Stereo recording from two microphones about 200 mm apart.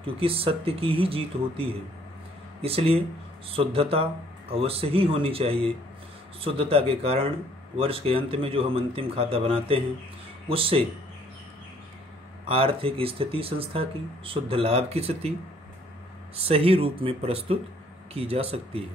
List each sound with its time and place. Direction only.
0.0 s speech: 30° right (ahead or behind)
12.4 s speech: 25° right (ahead or behind)
16.3 s speech: 30° right (ahead or behind)